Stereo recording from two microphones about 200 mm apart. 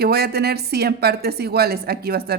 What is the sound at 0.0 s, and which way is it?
A woman's voice, 50° right (ahead or behind).